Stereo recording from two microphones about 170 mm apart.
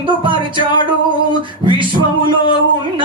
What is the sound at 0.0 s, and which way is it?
Music, 30° right (ahead or behind).